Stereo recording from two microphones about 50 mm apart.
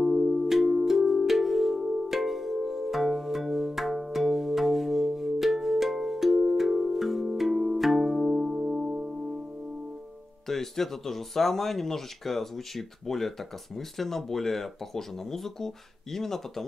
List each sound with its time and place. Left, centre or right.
0.0 s music: centre
1.8 s music: centre
2.0 s music: centre
10.5 s speech: centre